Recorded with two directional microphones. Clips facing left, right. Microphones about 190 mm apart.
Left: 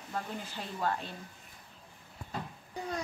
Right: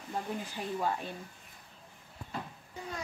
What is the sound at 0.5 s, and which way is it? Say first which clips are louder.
Speech: even; 10° right (ahead or behind).